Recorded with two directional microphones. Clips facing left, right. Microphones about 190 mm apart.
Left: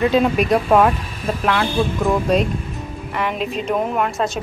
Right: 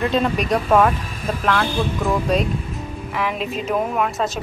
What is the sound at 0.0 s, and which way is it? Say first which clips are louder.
Speech: left 4 dB; 5° left (ahead or behind).